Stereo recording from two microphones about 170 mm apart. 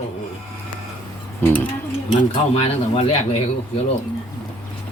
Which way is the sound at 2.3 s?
40° left (ahead or behind).